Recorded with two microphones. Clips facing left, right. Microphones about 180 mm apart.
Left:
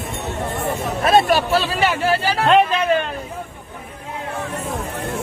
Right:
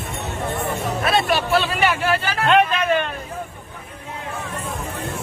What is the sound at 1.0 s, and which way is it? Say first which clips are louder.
Speech: left 5 dB; 40° left (ahead or behind).